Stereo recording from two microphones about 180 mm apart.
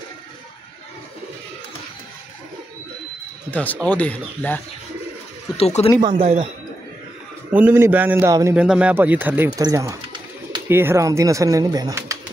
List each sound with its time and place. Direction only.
3.5 s speech: 10° left (ahead or behind)
5.6 s speech: 35° left (ahead or behind)
6.0 s a man's voice: 30° right (ahead or behind)
7.5 s speech: 10° right (ahead or behind)
8.5 s speech: 5° right (ahead or behind)